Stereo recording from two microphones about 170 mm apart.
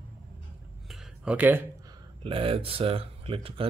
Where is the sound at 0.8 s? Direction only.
5° right (ahead or behind).